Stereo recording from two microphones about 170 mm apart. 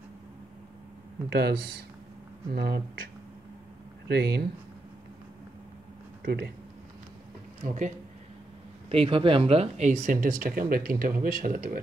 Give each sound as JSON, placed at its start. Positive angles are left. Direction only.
{"t": 1.3, "sound": "speech", "side_deg": -75}
{"t": 4.1, "sound": "speech", "side_deg": -70}
{"t": 6.2, "sound": "speech", "side_deg": -75}
{"t": 7.6, "sound": "speech", "side_deg": -50}
{"t": 8.8, "sound": "speech", "side_deg": -35}
{"t": 10.4, "sound": "speech", "side_deg": -55}